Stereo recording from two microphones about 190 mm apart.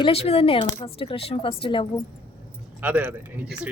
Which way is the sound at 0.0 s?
30° left (ahead or behind).